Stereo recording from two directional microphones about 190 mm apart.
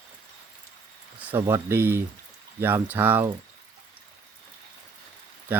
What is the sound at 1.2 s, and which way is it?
Speech, 15° right (ahead or behind).